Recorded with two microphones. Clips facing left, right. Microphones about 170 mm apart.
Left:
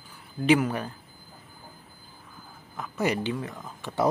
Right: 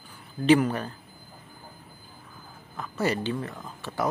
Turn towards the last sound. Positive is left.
turn(degrees=15)  # may be behind; listen again after turning